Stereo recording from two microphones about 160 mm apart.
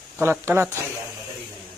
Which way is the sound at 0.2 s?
15° right (ahead or behind).